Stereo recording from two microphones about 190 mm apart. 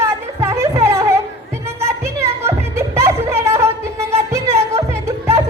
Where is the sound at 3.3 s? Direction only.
15° right (ahead or behind).